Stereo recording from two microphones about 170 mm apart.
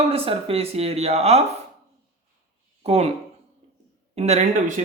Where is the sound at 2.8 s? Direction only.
35° right (ahead or behind).